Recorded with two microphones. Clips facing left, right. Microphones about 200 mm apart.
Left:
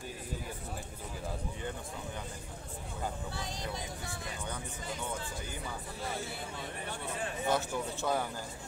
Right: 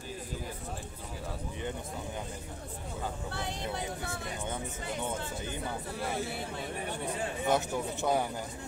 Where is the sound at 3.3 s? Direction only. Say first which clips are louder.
Right 3 dB; 65° right (ahead or behind).